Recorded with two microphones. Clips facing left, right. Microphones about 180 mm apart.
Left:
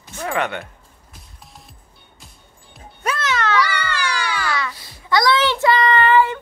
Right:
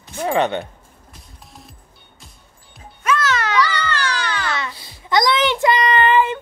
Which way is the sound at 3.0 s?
35° left (ahead or behind).